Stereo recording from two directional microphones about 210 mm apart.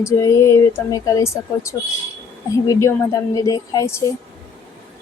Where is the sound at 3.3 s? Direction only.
15° left (ahead or behind).